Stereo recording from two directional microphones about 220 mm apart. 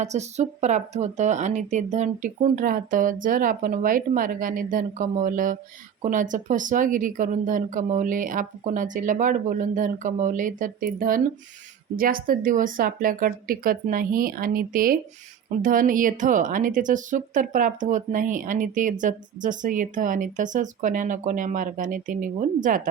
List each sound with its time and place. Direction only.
0.0 s a woman's voice: 30° right (ahead or behind)